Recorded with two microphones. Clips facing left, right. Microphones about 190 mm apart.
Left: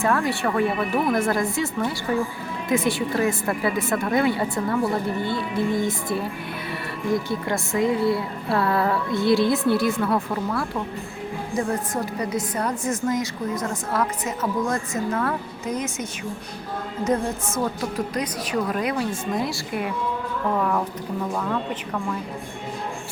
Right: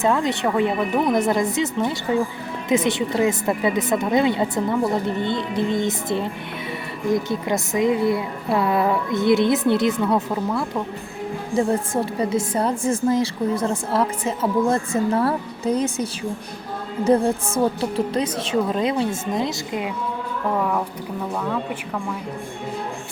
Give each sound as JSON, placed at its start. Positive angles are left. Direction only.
{"t": 0.0, "sound": "a woman's voice", "side_deg": -20}
{"t": 20.6, "sound": "speech", "side_deg": -5}